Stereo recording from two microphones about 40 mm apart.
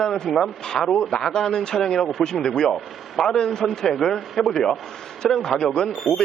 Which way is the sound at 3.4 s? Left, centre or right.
Centre.